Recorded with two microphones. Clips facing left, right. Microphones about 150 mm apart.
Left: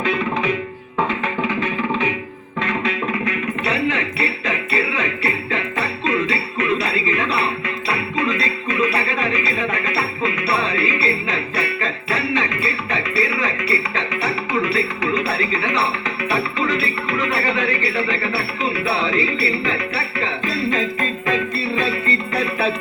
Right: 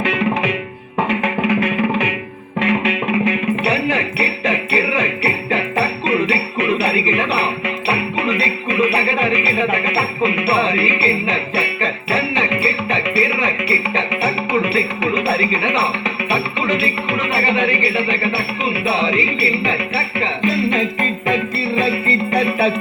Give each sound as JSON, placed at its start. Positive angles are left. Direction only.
{"t": 2.6, "sound": "music", "side_deg": 35}
{"t": 3.1, "sound": "music", "side_deg": -25}
{"t": 16.8, "sound": "music", "side_deg": -25}
{"t": 22.4, "sound": "music", "side_deg": -30}